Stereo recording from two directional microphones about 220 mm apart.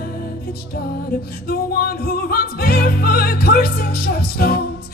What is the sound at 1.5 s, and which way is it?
Music, 45° left (ahead or behind).